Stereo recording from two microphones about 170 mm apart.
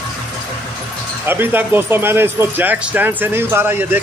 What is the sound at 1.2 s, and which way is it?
Speech, 10° right (ahead or behind).